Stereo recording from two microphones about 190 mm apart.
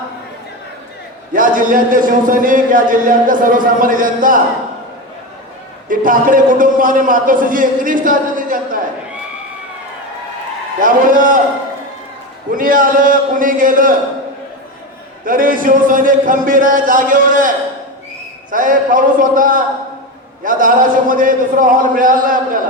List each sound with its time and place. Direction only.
1.3 s a man's voice: 45° right (ahead or behind)
5.9 s a man's voice: 45° right (ahead or behind)
10.8 s a man's voice: 45° right (ahead or behind)
12.5 s a man's voice: 45° right (ahead or behind)
15.2 s a man's voice: 45° right (ahead or behind)
18.5 s a man's voice: 45° right (ahead or behind)